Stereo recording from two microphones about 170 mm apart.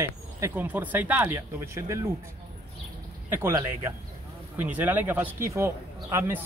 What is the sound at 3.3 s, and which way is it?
Speech, 15° right (ahead or behind).